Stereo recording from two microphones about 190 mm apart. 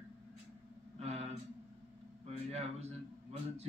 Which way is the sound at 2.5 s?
35° right (ahead or behind).